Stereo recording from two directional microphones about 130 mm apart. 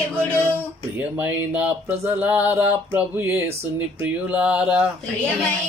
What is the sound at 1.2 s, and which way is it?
Speech, 10° right (ahead or behind).